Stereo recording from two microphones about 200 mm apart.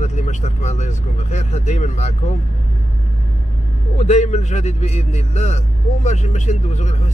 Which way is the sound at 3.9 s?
35° left (ahead or behind).